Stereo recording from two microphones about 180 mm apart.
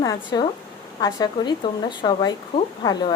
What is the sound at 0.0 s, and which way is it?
Speech, 20° left (ahead or behind).